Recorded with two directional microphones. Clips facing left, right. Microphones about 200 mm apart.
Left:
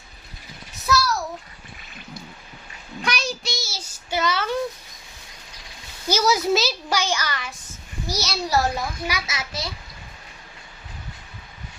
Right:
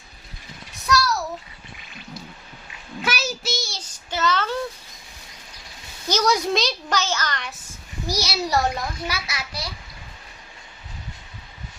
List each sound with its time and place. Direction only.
0.9 s a sound: centre (ahead or behind)
3.0 s child singing: 5° right (ahead or behind); by 4.5 s 10° left (ahead or behind)
6.1 s a sound: 5° left (ahead or behind)
8.0 s a child's voice: 10° right (ahead or behind)
8.4 s a woman's voice: centre (ahead or behind)
9.0 s a child's voice: 20° left (ahead or behind)